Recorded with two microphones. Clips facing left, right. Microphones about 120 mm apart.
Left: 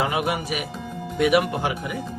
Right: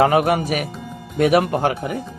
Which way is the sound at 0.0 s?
50° right (ahead or behind).